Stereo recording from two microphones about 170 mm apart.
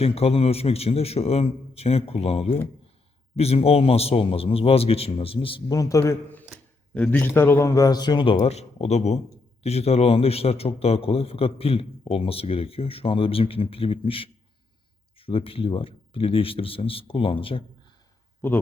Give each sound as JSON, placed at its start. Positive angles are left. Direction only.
{"t": 0.0, "sound": "a man's voice", "side_deg": 35}
{"t": 6.5, "sound": "a sound", "side_deg": 5}
{"t": 7.3, "sound": "a man's voice", "side_deg": 15}
{"t": 18.4, "sound": "speech", "side_deg": 15}